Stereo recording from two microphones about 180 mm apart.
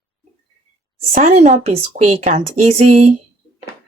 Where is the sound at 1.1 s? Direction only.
40° right (ahead or behind).